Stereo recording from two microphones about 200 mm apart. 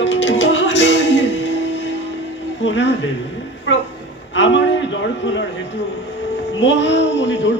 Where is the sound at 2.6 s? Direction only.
65° left (ahead or behind).